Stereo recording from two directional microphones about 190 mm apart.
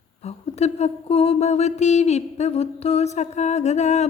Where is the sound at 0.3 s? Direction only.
35° left (ahead or behind).